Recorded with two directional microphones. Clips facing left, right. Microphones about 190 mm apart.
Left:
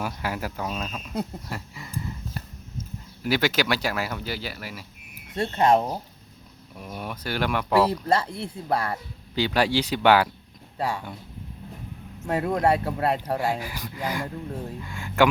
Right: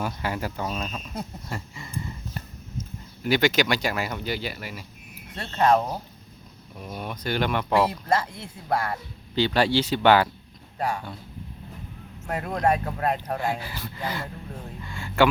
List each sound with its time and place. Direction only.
0.0 s speech: 5° left (ahead or behind)
5.3 s speech: 20° left (ahead or behind)
6.8 s speech: 5° left (ahead or behind)
7.9 s speech: 30° left (ahead or behind)
9.3 s speech: 10° left (ahead or behind)
10.8 s speech: 30° left (ahead or behind)
12.2 s speech: 25° left (ahead or behind)
13.5 s speech: 15° left (ahead or behind)